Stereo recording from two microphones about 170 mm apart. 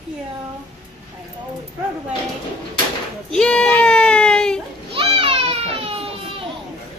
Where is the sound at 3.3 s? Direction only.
5° left (ahead or behind).